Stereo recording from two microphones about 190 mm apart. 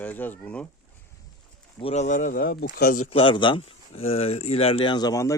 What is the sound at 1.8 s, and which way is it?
Speech, 35° left (ahead or behind).